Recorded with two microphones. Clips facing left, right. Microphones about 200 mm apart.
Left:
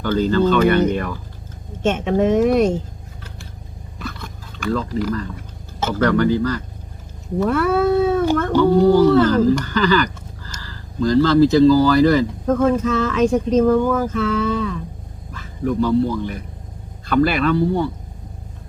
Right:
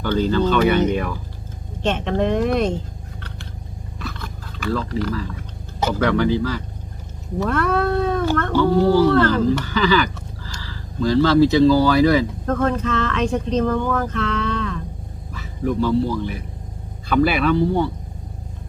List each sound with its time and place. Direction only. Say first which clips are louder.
0.1 s speech: left 2 dB; 5° left (ahead or behind)
1.8 s speech: left 3 dB; 5° left (ahead or behind)
4.0 s a sound: left 1 dB; centre (ahead or behind)
4.9 s speech: left 2 dB; 10° left (ahead or behind)
6.0 s speech: left 3 dB; centre (ahead or behind)
8.4 s dog: left 2 dB; 5° left (ahead or behind)
8.7 s speech: left 3 dB; centre (ahead or behind)
10.4 s a sound: even; 90° right
11.0 s speech: left 1 dB; centre (ahead or behind)
15.3 s a man's voice: left 1 dB; 5° right (ahead or behind)